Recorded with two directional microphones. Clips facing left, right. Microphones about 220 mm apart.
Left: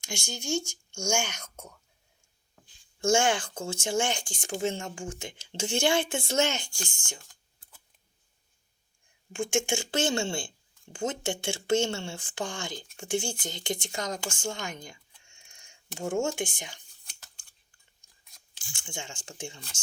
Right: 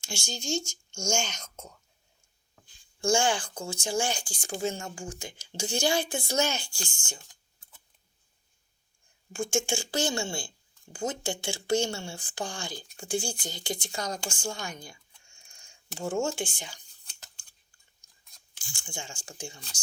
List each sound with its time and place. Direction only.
0.0 s speech: 20° left (ahead or behind)
3.0 s speech: 25° left (ahead or behind)
9.3 s speech: 20° left (ahead or behind)
16.2 s speech: 20° left (ahead or behind)
18.8 s speech: 20° left (ahead or behind)